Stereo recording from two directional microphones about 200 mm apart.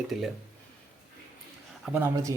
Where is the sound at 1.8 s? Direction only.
10° right (ahead or behind).